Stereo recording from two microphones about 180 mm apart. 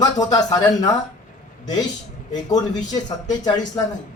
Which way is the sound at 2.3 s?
20° left (ahead or behind).